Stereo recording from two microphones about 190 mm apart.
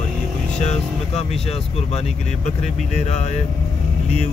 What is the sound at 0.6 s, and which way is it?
Speech, 35° left (ahead or behind).